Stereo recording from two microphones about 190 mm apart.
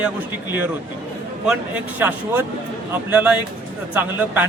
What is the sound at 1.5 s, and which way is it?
A man's voice, 10° right (ahead or behind).